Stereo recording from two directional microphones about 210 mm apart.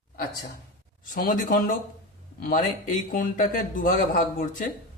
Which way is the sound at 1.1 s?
40° left (ahead or behind).